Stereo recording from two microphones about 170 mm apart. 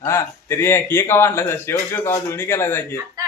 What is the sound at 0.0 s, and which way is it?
Speech, 15° left (ahead or behind).